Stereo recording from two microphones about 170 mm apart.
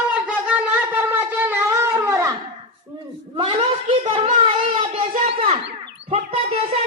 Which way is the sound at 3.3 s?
30° right (ahead or behind).